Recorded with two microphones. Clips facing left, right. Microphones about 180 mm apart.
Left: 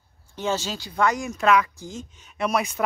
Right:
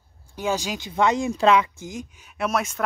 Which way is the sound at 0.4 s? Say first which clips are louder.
Right 1 dB; 10° right (ahead or behind).